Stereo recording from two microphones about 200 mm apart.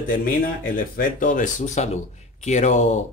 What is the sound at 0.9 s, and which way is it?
A man's voice, 40° left (ahead or behind).